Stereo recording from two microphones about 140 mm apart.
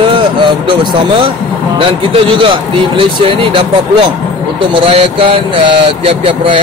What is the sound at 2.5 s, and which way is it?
Speech, 40° right (ahead or behind).